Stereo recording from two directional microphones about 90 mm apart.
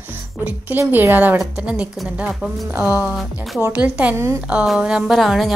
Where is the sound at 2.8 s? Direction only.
20° right (ahead or behind).